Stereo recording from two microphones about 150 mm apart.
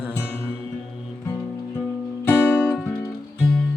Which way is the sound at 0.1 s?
15° left (ahead or behind).